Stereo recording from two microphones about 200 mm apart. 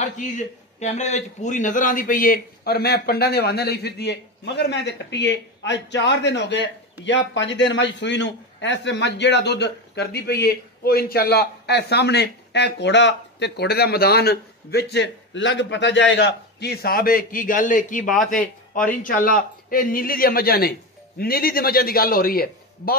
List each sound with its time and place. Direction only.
0.0 s a man's voice: 35° left (ahead or behind)